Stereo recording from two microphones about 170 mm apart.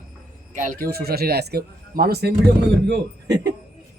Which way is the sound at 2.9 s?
90° right.